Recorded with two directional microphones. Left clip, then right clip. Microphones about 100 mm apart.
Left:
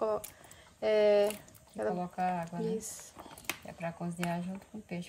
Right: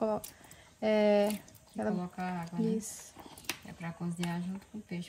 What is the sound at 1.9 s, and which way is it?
Speech, 55° left (ahead or behind).